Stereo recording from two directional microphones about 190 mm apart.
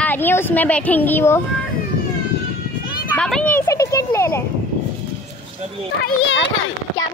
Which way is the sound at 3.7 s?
15° left (ahead or behind).